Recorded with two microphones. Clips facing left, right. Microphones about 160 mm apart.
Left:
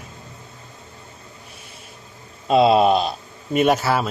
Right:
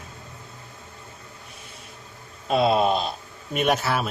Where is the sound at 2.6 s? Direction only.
75° left (ahead or behind).